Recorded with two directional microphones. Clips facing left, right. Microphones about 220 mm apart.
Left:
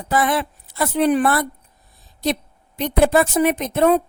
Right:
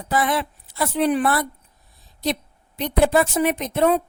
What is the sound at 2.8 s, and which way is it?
A woman's voice, 50° left (ahead or behind).